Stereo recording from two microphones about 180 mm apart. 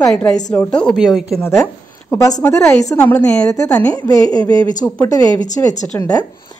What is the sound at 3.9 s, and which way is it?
A woman's voice, 20° left (ahead or behind).